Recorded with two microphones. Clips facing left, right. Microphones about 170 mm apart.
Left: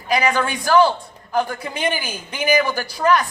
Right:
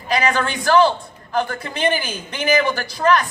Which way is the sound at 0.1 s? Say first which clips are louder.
Even; 10° left (ahead or behind).